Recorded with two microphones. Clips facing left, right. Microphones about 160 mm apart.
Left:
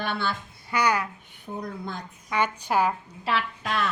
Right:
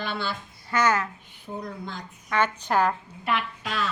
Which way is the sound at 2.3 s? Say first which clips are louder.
Right 1 dB; 10° left (ahead or behind).